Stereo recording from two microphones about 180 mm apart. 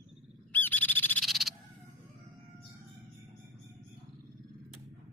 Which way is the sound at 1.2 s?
Centre (ahead or behind).